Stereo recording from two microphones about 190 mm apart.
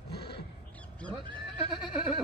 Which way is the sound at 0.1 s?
60° left (ahead or behind).